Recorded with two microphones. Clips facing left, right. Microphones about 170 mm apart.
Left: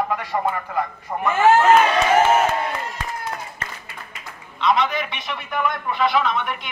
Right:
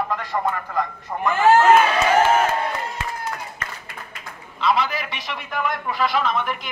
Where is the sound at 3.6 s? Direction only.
30° left (ahead or behind).